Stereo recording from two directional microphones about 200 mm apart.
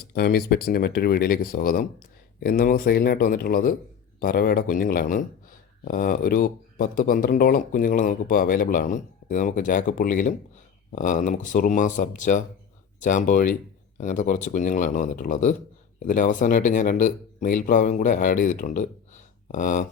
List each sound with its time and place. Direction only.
0.1 s speech: 50° left (ahead or behind)